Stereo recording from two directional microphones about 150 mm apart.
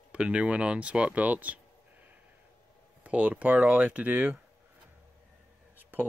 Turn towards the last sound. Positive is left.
turn(degrees=-15)  # may be behind; listen again after turning